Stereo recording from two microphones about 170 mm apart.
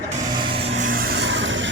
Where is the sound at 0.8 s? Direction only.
60° right (ahead or behind); by 1.7 s 90° right.